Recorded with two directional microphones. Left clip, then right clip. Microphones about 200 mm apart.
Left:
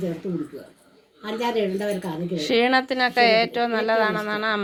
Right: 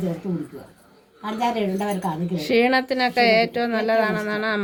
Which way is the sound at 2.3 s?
5° right (ahead or behind).